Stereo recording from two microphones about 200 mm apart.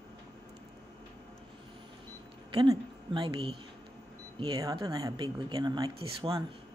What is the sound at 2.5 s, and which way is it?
Speech, 25° right (ahead or behind).